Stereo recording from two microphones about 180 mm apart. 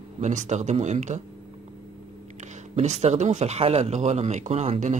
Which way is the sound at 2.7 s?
40° right (ahead or behind).